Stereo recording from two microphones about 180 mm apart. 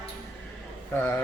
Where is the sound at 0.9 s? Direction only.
15° left (ahead or behind).